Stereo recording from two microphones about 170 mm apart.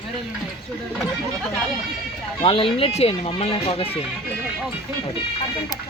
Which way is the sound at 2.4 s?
30° left (ahead or behind).